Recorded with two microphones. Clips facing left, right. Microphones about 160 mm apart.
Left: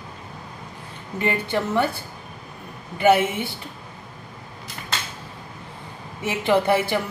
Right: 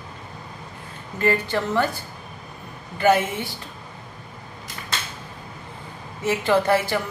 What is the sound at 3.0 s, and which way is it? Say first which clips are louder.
Speech: left 1 dB; 20° left (ahead or behind).